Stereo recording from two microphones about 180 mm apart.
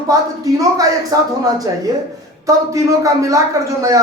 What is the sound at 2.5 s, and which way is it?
Speech, 20° right (ahead or behind).